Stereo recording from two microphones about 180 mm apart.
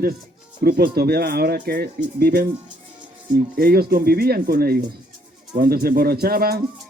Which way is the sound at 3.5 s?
60° right (ahead or behind).